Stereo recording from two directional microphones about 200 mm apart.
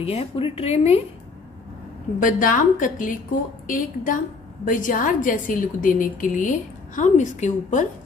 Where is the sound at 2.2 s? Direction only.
40° left (ahead or behind).